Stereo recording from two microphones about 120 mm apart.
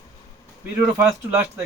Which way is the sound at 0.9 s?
25° right (ahead or behind).